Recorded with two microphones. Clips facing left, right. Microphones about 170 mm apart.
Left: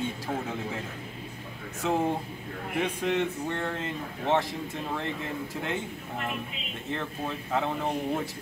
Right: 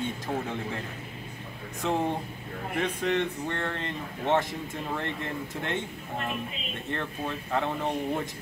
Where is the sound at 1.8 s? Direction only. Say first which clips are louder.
Left 1 dB; 5° left (ahead or behind).